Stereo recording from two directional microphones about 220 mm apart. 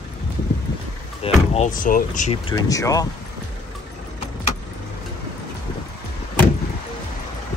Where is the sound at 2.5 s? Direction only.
15° left (ahead or behind).